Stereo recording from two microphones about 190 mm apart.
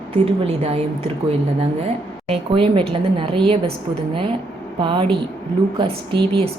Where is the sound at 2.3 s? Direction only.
25° right (ahead or behind).